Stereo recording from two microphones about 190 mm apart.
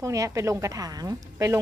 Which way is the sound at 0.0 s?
15° right (ahead or behind).